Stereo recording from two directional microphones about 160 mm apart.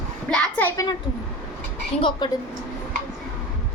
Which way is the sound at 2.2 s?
30° left (ahead or behind).